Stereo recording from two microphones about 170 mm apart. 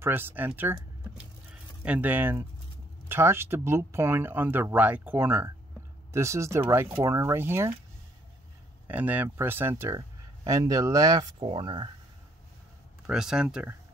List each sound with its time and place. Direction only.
0.0 s speech: 10° right (ahead or behind)
8.8 s speech: 10° right (ahead or behind); by 11.9 s 30° right (ahead or behind)
13.0 s speech: 5° right (ahead or behind)